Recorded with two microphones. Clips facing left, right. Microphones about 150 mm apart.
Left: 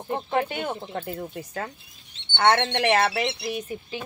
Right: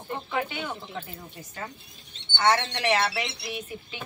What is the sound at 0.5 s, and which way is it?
Speech, 50° left (ahead or behind).